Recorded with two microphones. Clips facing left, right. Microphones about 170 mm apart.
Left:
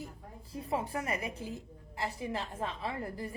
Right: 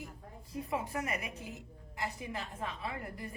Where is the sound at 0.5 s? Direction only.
30° left (ahead or behind).